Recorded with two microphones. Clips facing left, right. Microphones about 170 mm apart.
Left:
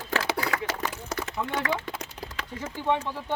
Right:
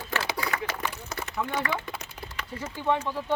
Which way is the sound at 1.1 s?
90° left.